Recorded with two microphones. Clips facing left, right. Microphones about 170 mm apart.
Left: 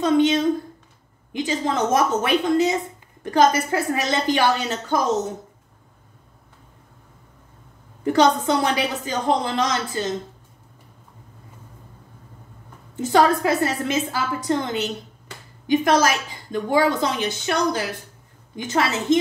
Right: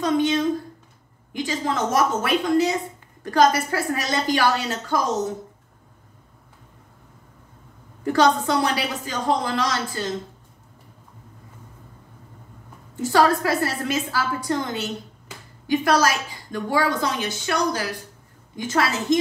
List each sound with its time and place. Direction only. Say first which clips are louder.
0.0 s a sound: left 3 dB; 25° left (ahead or behind)
1.3 s a woman's voice: left 2 dB; 25° left (ahead or behind)
8.0 s a woman's voice: left 1 dB; 20° left (ahead or behind)
13.0 s a woman's voice: left 1 dB; 20° left (ahead or behind)